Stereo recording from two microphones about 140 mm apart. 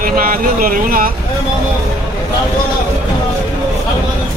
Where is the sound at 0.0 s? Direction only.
90° right.